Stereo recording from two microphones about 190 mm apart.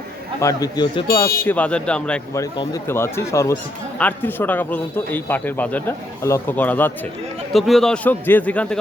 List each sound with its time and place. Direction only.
0.3 s a man's voice: 15° left (ahead or behind)
1.5 s a man's voice: 5° left (ahead or behind)
2.3 s speech: 15° left (ahead or behind)